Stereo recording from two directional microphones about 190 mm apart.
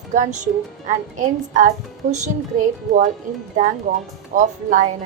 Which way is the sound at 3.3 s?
45° right (ahead or behind).